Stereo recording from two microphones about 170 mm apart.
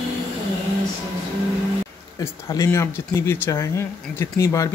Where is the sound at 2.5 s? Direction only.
15° left (ahead or behind).